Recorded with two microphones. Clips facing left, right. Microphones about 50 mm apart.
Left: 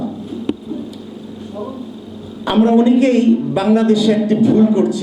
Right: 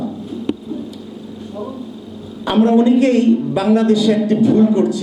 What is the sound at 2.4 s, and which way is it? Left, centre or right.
A woman's voice, left.